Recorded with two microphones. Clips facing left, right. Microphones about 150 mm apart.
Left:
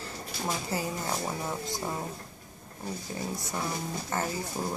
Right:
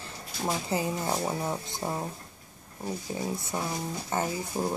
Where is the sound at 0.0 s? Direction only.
20° right (ahead or behind).